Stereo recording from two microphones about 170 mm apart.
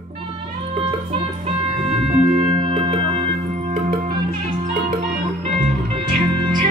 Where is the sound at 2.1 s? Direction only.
40° right (ahead or behind).